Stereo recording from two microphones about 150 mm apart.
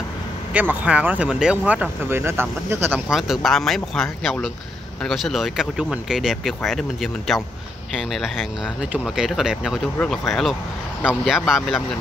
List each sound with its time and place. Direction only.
0.5 s speech: 10° right (ahead or behind)
3.1 s speech: centre (ahead or behind)